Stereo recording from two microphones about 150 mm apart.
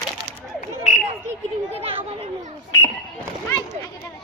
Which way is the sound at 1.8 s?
40° right (ahead or behind).